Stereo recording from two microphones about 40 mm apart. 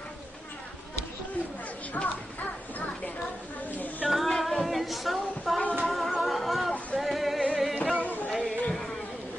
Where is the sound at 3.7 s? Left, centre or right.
Left.